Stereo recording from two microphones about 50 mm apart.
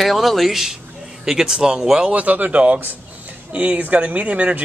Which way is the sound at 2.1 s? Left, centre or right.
Right.